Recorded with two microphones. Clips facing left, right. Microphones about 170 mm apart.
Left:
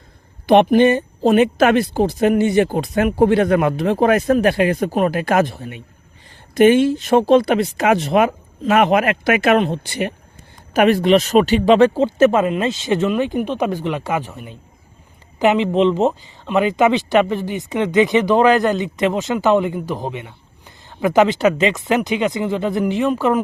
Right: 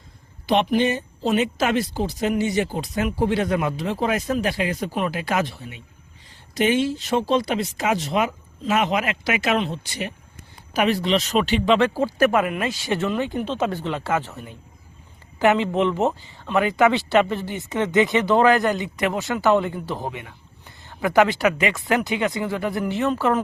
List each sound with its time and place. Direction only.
0.4 s speech: 55° left (ahead or behind)
11.9 s speech: 25° left (ahead or behind)